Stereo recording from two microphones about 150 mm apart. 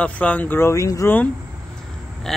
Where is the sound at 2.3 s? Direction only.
Centre (ahead or behind).